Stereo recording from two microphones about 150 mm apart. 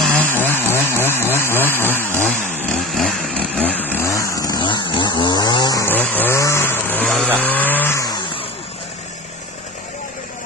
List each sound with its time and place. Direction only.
0.1 s chainsaw: 10° left (ahead or behind)
2.3 s chainsaw: 55° left (ahead or behind)
2.7 s chainsaw: centre (ahead or behind); by 5.9 s 25° left (ahead or behind)
5.9 s vehicle: 10° left (ahead or behind)
7.2 s vehicle: 10° right (ahead or behind)
7.5 s chainsaw: 10° left (ahead or behind)